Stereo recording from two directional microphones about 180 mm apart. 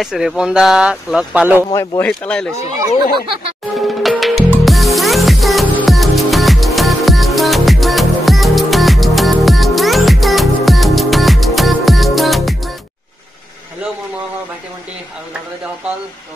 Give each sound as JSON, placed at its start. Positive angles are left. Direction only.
{"t": 0.0, "sound": "speech", "side_deg": 0}
{"t": 1.7, "sound": "speech", "side_deg": 15}
{"t": 3.8, "sound": "music", "side_deg": 0}